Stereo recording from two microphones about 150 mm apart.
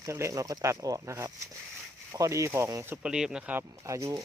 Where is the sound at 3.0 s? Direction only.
5° right (ahead or behind); by 4.2 s 20° right (ahead or behind).